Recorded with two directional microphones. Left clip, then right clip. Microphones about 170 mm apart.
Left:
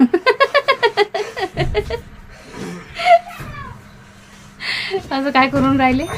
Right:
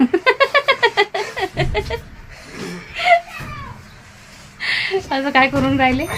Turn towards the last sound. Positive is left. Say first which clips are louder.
# left 1 dB
turn(degrees=5)  # may be behind; listen again after turning